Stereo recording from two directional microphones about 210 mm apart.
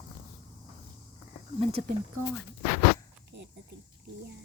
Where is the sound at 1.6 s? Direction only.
30° right (ahead or behind).